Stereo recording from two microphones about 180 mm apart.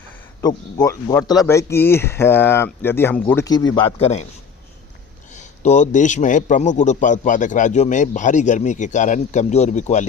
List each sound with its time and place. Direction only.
0.4 s speech: 20° left (ahead or behind)
3.9 s a man's voice: 35° left (ahead or behind)
5.3 s a man's voice: 40° left (ahead or behind)